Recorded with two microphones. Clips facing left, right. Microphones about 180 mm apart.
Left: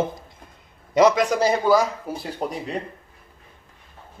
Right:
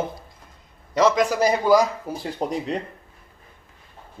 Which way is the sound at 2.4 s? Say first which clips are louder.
Right 2 dB; 30° right (ahead or behind).